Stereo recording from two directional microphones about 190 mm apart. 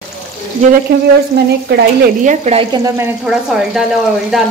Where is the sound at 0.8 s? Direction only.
60° right (ahead or behind).